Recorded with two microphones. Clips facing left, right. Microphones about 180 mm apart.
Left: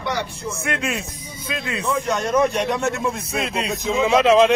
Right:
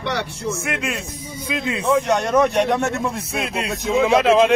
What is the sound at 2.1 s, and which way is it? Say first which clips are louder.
Speech: right 2 dB; 70° right (ahead or behind).